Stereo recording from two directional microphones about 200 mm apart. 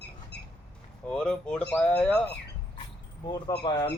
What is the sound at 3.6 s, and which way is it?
Speech, 20° left (ahead or behind).